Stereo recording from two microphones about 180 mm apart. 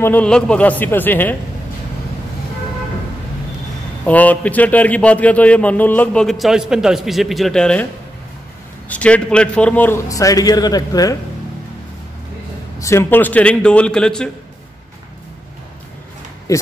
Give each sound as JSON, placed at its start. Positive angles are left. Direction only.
{"t": 0.0, "sound": "a man's voice", "side_deg": 10}
{"t": 4.0, "sound": "a man's voice", "side_deg": 10}
{"t": 12.7, "sound": "a man's voice", "side_deg": 15}
{"t": 16.5, "sound": "speech", "side_deg": 20}